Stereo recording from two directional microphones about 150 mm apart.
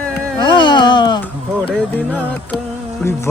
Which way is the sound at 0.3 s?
30° left (ahead or behind).